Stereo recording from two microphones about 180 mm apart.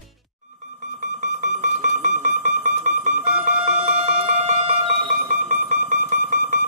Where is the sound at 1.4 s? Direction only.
45° right (ahead or behind).